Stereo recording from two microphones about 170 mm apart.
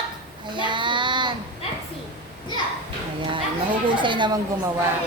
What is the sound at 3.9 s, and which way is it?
Speech, 30° right (ahead or behind).